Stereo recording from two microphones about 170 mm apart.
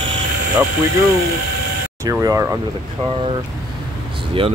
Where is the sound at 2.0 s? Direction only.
20° right (ahead or behind).